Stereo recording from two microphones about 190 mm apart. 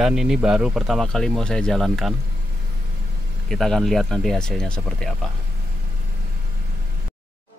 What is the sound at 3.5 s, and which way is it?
Speech, centre (ahead or behind).